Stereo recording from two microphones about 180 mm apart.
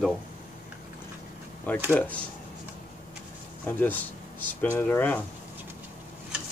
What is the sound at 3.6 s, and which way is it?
Speech, 10° left (ahead or behind).